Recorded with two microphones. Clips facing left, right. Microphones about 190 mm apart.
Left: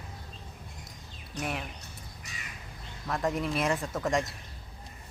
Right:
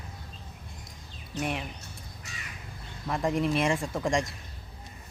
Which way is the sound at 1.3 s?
Centre (ahead or behind).